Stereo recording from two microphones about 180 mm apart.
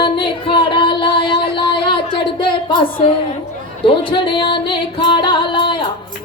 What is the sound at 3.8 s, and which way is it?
Music, 30° left (ahead or behind).